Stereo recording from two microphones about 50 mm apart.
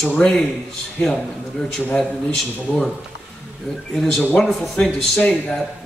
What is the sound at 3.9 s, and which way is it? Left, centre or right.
Speech, centre.